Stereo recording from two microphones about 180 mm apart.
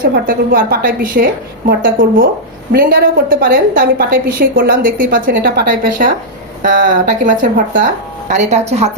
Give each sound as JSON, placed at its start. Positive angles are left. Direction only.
{"t": 0.0, "sound": "a woman's voice", "side_deg": -50}
{"t": 5.3, "sound": "a woman's voice", "side_deg": -65}